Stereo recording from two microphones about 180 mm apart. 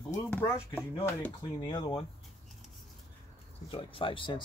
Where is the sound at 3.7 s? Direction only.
30° left (ahead or behind).